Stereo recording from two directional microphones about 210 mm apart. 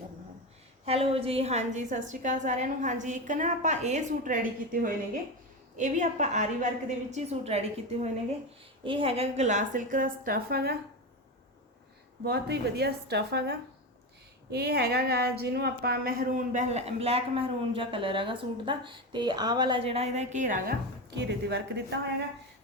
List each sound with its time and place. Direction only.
0.9 s speech: 30° right (ahead or behind)
8.8 s speech: 25° right (ahead or behind); by 10.8 s 45° right (ahead or behind)
12.2 s speech: 50° right (ahead or behind)
21.2 s speech: 55° right (ahead or behind)